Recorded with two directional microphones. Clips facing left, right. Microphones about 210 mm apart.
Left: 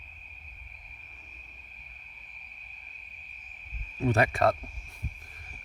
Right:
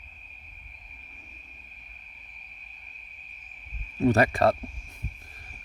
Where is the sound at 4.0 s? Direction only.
40° right (ahead or behind).